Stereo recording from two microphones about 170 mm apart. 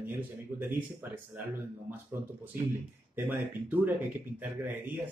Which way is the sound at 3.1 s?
10° right (ahead or behind).